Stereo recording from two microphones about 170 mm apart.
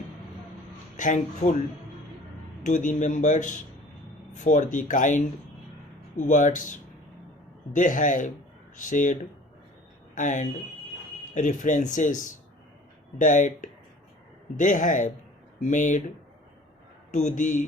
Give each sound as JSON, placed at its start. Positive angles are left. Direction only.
{"t": 0.9, "sound": "speech", "side_deg": 45}
{"t": 2.6, "sound": "speech", "side_deg": 45}
{"t": 6.1, "sound": "speech", "side_deg": 45}
{"t": 10.2, "sound": "speech", "side_deg": 45}
{"t": 17.1, "sound": "speech", "side_deg": 45}